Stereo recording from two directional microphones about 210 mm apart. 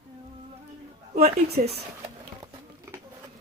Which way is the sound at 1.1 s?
45° right (ahead or behind).